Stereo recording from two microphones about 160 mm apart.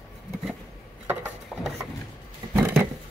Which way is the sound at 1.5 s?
Centre (ahead or behind).